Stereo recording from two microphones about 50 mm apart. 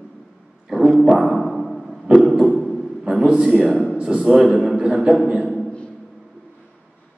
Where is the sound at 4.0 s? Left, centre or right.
Centre.